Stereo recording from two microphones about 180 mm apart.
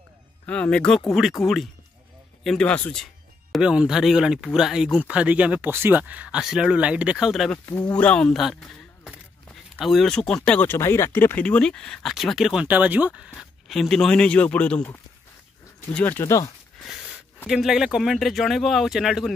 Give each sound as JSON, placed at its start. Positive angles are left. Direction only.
{"t": 0.5, "sound": "speech", "side_deg": 5}
{"t": 7.5, "sound": "speech", "side_deg": 15}
{"t": 16.8, "sound": "a sound", "side_deg": 0}
{"t": 17.5, "sound": "speech", "side_deg": 0}